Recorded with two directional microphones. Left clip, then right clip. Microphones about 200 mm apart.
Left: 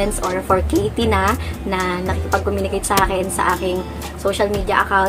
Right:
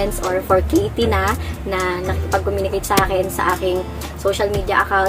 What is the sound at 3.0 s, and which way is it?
Speech, 15° left (ahead or behind).